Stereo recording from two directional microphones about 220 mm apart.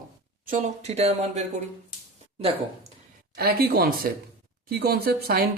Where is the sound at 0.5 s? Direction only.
30° right (ahead or behind).